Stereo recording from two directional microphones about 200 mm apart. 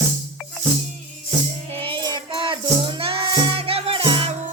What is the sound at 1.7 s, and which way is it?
Music, 30° right (ahead or behind).